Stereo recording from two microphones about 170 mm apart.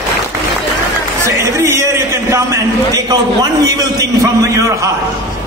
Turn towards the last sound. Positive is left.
turn(degrees=-20)  # may be behind; listen again after turning